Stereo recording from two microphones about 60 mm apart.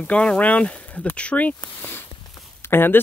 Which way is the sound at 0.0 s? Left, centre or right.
Centre.